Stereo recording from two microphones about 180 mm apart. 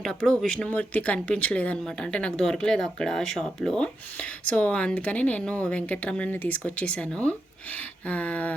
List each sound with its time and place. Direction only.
0.0 s speech: 5° left (ahead or behind)